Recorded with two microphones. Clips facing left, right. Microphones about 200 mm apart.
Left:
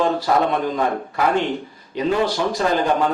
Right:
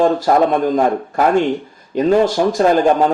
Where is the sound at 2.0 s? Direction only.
45° right (ahead or behind).